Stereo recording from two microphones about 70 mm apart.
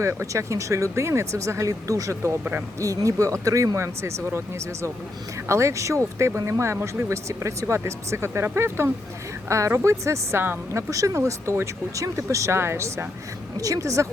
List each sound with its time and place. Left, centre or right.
0.0 s speech: right
2.4 s speech: right
2.8 s a woman's voice: right
10.4 s a woman's voice: right
10.9 s speech: right
13.6 s speech: right